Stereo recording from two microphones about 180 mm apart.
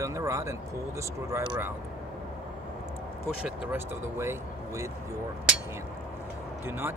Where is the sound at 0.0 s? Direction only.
15° right (ahead or behind).